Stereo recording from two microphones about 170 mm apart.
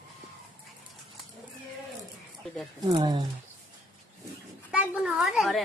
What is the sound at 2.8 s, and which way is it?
Speech, 30° right (ahead or behind).